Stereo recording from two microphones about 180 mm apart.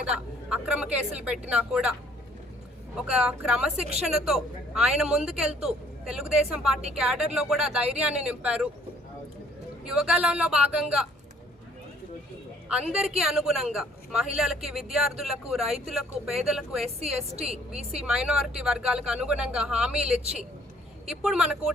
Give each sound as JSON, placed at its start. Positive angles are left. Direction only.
{"t": 0.0, "sound": "a woman's voice", "side_deg": -5}
{"t": 9.8, "sound": "a woman's voice", "side_deg": -5}
{"t": 12.6, "sound": "a woman's voice", "side_deg": -5}
{"t": 17.3, "sound": "a woman's voice", "side_deg": -35}
{"t": 17.9, "sound": "a woman's voice", "side_deg": -5}